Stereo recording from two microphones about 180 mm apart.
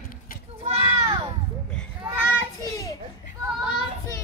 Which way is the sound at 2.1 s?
10° right (ahead or behind).